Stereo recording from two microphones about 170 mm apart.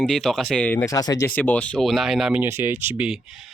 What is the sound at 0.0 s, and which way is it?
Speech, centre (ahead or behind).